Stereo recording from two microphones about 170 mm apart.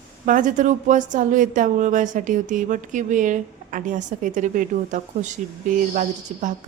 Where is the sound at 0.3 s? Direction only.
50° right (ahead or behind).